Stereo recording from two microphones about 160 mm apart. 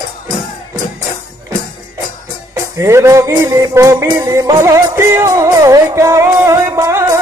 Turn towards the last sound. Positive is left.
turn(degrees=-15)  # may be behind; listen again after turning